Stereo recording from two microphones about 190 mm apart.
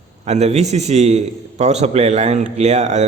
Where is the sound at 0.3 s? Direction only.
35° right (ahead or behind).